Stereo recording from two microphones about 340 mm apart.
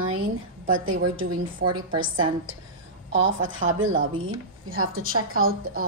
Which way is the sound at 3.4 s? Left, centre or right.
Right.